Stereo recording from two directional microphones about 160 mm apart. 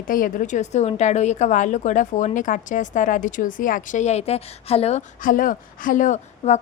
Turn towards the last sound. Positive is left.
turn(degrees=50)  # may be behind; listen again after turning